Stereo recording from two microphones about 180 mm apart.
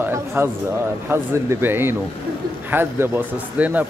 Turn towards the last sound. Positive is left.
turn(degrees=-10)  # may be behind; listen again after turning